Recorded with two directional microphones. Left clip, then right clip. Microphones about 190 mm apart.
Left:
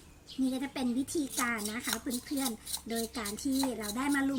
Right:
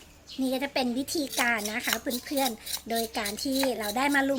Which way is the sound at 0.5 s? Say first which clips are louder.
Right 7 dB; 20° left (ahead or behind).